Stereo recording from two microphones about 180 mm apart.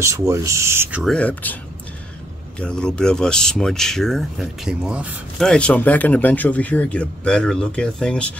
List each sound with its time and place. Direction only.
0.0 s speech: 15° right (ahead or behind)
1.0 s speech: 5° left (ahead or behind)
2.6 s speech: 5° left (ahead or behind)
5.4 s speech: 5° left (ahead or behind)